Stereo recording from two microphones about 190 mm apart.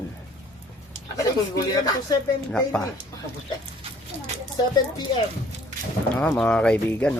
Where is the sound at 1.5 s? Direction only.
20° left (ahead or behind).